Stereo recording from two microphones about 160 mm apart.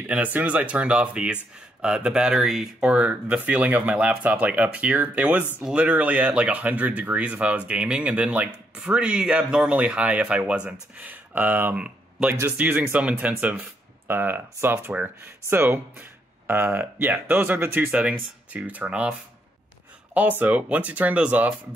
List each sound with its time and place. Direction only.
0.0 s speech: 10° right (ahead or behind)
20.2 s speech: 10° right (ahead or behind)